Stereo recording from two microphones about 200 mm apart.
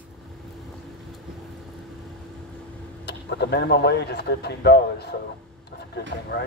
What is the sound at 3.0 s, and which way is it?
Speech, 55° left (ahead or behind).